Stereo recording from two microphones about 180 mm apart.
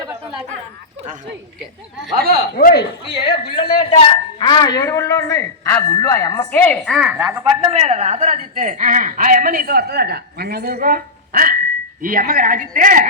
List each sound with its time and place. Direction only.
2.1 s speech: 55° right (ahead or behind)
2.6 s speech: 55° left (ahead or behind)
3.6 s a man's voice: 30° left (ahead or behind); by 7.1 s 5° left (ahead or behind)
7.1 s a woman's voice: 10° right (ahead or behind)
7.5 s speech: 30° right (ahead or behind)